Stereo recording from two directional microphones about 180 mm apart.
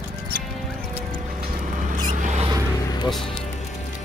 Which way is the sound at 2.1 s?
40° right (ahead or behind).